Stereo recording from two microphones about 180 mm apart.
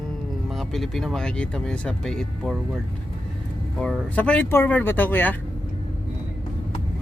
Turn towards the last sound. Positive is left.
turn(degrees=10)  # may be behind; listen again after turning